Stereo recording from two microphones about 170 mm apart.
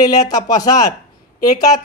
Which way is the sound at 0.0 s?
20° left (ahead or behind).